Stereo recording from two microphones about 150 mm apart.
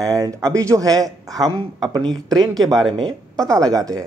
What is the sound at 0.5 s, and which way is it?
A woman's voice, 20° right (ahead or behind).